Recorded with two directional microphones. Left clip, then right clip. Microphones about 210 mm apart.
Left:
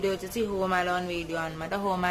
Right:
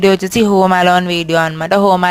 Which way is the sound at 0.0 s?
45° right (ahead or behind).